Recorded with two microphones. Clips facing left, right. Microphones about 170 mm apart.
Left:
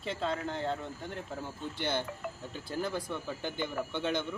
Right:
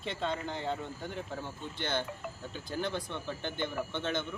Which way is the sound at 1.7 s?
10° left (ahead or behind).